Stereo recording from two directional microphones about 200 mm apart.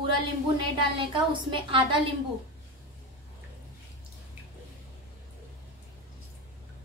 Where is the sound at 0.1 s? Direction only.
25° right (ahead or behind).